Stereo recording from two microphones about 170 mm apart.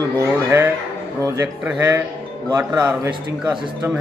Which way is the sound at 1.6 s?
10° right (ahead or behind).